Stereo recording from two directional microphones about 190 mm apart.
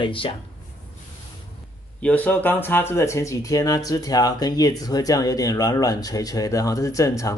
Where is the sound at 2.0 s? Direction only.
10° left (ahead or behind).